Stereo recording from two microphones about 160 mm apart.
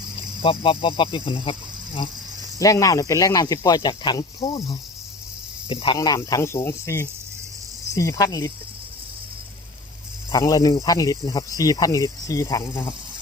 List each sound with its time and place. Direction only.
0.4 s speech: 35° left (ahead or behind)
2.6 s speech: 20° left (ahead or behind)
10.3 s speech: 20° left (ahead or behind)